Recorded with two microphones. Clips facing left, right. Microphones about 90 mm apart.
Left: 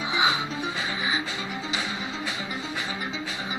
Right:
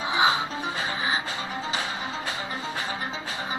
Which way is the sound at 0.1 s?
35° right (ahead or behind).